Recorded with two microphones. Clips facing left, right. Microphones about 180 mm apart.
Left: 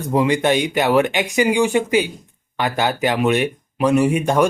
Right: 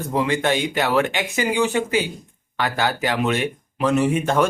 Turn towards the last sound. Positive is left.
turn(degrees=15)  # may be behind; listen again after turning